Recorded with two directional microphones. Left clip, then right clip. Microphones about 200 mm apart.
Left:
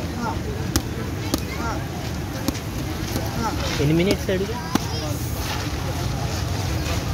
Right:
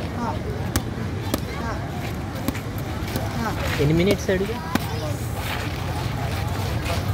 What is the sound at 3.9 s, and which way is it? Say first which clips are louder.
Speech: right 1 dB; 15° right (ahead or behind).